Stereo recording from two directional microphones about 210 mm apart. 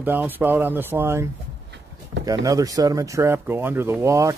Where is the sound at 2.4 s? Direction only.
15° right (ahead or behind).